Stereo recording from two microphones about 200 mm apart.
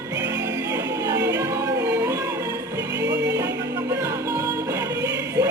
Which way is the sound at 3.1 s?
60° right (ahead or behind).